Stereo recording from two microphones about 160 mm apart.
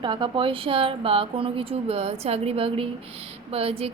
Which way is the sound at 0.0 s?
30° right (ahead or behind).